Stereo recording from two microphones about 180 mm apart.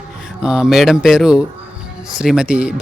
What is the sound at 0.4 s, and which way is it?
Speech, 5° right (ahead or behind).